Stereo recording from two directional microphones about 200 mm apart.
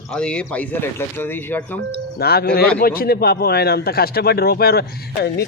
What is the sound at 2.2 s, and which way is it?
Speech, 50° left (ahead or behind).